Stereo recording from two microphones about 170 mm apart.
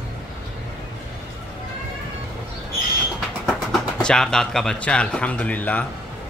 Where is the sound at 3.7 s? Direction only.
5° left (ahead or behind).